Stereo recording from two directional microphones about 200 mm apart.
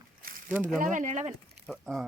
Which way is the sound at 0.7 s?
40° right (ahead or behind).